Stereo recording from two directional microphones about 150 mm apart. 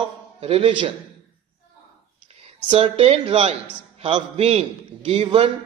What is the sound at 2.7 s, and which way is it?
A man's voice, 40° right (ahead or behind).